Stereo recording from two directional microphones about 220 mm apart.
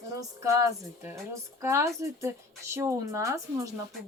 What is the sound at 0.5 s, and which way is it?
Speech, 15° right (ahead or behind).